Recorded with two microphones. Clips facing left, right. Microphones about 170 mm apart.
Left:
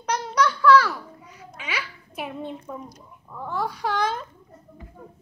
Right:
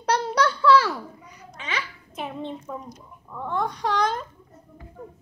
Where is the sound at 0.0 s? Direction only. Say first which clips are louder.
Right 1 dB; 30° right (ahead or behind).